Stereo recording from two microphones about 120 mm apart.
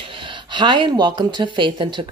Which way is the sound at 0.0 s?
45° right (ahead or behind).